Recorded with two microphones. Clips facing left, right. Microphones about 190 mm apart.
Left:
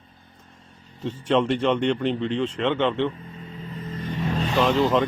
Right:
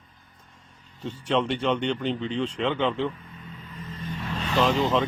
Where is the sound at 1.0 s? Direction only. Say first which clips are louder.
Left 4 dB; 5° left (ahead or behind).